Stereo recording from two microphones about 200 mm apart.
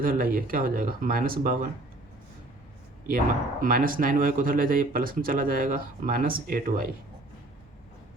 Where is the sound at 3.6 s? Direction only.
45° right (ahead or behind).